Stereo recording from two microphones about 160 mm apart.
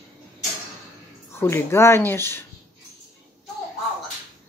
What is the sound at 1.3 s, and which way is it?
Speech, 15° left (ahead or behind).